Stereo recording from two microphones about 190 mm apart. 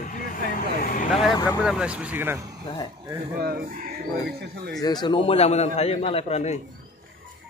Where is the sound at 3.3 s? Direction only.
50° right (ahead or behind).